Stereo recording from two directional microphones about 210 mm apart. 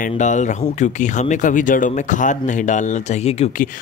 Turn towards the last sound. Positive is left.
turn(degrees=40)  # may be behind; listen again after turning